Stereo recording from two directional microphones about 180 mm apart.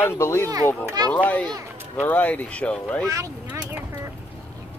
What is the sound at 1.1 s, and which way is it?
Speech, 10° left (ahead or behind).